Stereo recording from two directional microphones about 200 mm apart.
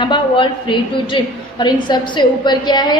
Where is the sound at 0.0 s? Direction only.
25° left (ahead or behind).